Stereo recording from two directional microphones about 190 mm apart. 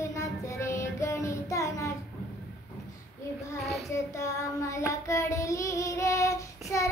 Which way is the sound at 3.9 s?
15° left (ahead or behind).